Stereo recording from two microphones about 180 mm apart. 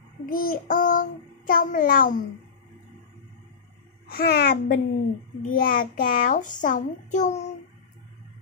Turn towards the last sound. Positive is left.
turn(degrees=45)  # may be behind; listen again after turning